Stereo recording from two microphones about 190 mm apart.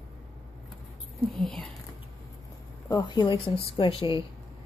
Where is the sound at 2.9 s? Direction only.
20° left (ahead or behind).